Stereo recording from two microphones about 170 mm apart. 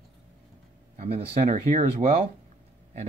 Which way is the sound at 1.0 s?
40° right (ahead or behind).